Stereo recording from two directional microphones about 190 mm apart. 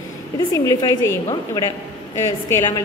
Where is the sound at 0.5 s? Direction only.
15° left (ahead or behind).